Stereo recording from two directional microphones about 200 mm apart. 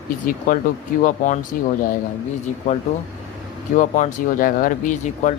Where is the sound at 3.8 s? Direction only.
40° left (ahead or behind).